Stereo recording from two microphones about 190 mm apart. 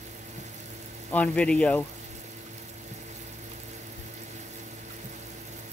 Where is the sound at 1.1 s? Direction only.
5° left (ahead or behind).